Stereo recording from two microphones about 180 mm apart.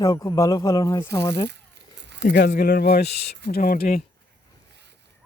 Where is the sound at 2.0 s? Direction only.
75° right (ahead or behind).